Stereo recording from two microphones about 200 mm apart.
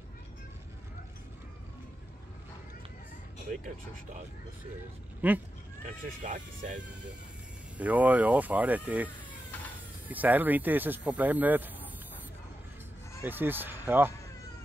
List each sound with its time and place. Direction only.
5.2 s speech: 10° right (ahead or behind)
6.2 s speech: 40° right (ahead or behind)
7.7 s speech: 5° right (ahead or behind)
13.2 s speech: 10° right (ahead or behind)